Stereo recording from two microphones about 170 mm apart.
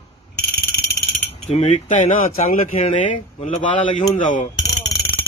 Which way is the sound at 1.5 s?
40° left (ahead or behind).